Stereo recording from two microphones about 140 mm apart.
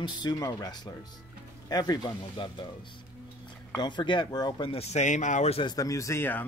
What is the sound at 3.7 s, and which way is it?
Speech, 35° left (ahead or behind).